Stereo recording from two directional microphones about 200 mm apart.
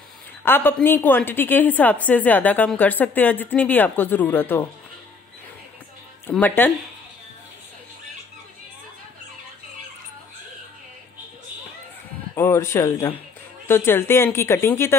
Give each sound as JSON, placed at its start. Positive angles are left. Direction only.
{"t": 0.5, "sound": "a woman's voice", "side_deg": 10}
{"t": 6.3, "sound": "a woman's voice", "side_deg": 10}
{"t": 12.4, "sound": "a woman's voice", "side_deg": 15}